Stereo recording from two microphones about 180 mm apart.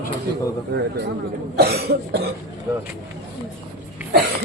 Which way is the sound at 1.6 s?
60° right (ahead or behind).